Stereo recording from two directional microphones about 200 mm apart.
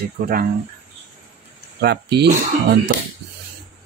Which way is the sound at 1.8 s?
55° right (ahead or behind).